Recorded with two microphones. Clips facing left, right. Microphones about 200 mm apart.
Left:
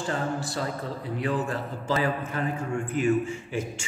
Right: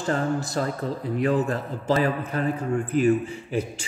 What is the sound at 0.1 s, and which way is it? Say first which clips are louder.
Speech: right 6 dB; 40° right (ahead or behind).